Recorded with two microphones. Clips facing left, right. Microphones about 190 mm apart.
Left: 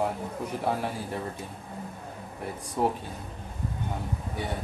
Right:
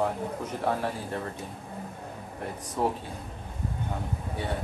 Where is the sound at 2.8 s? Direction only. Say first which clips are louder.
Left 1 dB; 15° left (ahead or behind).